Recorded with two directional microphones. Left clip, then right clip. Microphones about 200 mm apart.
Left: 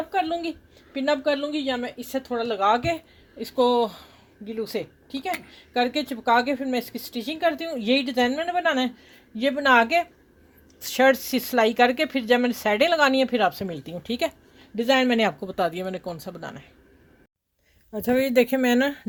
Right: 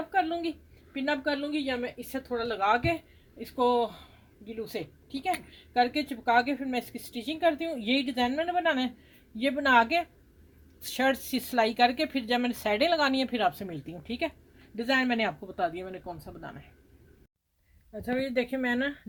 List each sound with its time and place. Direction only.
0.1 s a sound: 30° left (ahead or behind)
0.9 s a woman's voice: 25° left (ahead or behind); by 16.6 s 50° left (ahead or behind)
17.9 s speech: 45° left (ahead or behind)